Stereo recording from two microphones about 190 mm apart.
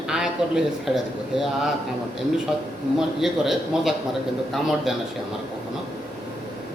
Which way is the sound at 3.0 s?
Centre (ahead or behind).